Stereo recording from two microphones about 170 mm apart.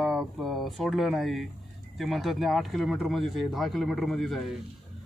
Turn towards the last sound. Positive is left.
turn(degrees=0)  # may be behind; listen again after turning